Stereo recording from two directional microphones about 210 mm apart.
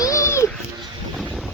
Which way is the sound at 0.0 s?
15° left (ahead or behind).